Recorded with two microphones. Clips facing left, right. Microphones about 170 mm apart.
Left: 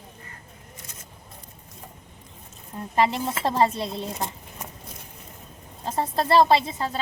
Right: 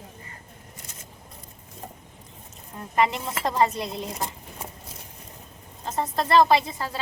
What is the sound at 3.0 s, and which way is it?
Speech, 30° left (ahead or behind).